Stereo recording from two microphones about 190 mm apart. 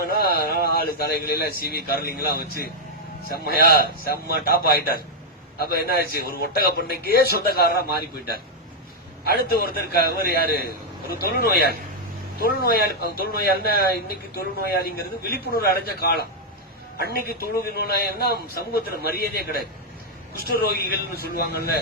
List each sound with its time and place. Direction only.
0.0 s a man's voice: 55° left (ahead or behind)
9.4 s a man's voice: 55° left (ahead or behind)